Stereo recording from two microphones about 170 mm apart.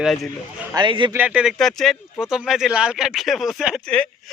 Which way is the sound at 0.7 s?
30° right (ahead or behind).